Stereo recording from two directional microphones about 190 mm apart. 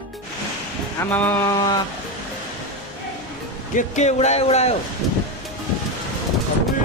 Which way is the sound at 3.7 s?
40° left (ahead or behind).